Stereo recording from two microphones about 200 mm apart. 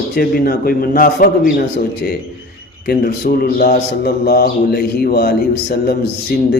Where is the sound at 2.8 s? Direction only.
50° left (ahead or behind).